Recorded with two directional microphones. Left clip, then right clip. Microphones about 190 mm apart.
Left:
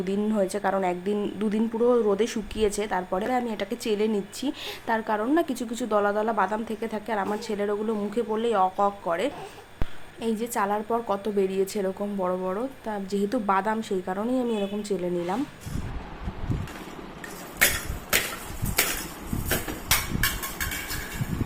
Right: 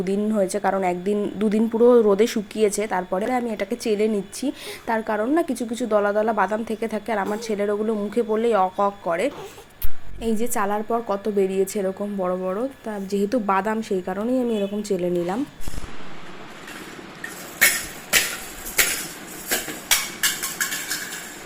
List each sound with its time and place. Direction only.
0.0 s a woman's voice: 15° right (ahead or behind)